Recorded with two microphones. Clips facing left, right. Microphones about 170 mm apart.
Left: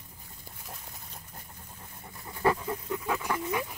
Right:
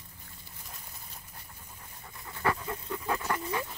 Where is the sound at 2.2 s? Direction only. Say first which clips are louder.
Left 4 dB; 20° left (ahead or behind).